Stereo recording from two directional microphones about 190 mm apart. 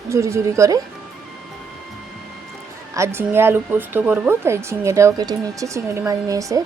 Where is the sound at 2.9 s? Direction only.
15° right (ahead or behind).